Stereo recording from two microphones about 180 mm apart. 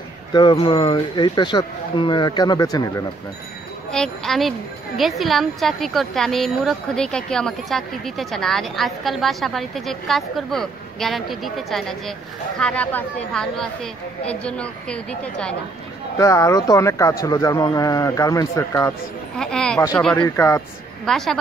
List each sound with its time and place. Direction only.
0.3 s speech: 25° left (ahead or behind)
3.9 s a woman's voice: 5° left (ahead or behind)
16.2 s speech: 15° left (ahead or behind)
19.3 s a woman's voice: 5° left (ahead or behind)
20.2 s speech: 15° left (ahead or behind)
21.0 s a woman's voice: centre (ahead or behind)